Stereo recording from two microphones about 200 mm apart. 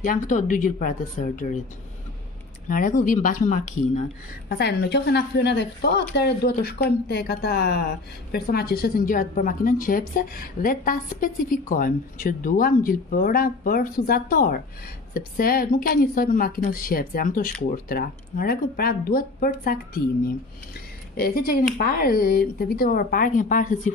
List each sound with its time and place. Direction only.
0.0 s speech: 40° left (ahead or behind)
2.7 s speech: 40° left (ahead or behind)
4.5 s a woman's voice: 55° left (ahead or behind)
21.2 s a woman's voice: 50° left (ahead or behind)